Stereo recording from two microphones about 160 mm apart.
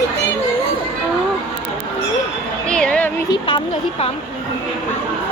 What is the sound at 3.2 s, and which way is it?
Speech, 30° left (ahead or behind).